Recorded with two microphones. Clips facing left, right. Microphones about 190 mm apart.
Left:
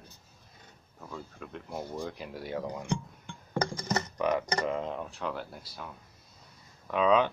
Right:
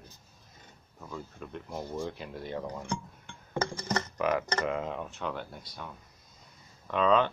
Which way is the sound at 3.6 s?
15° left (ahead or behind).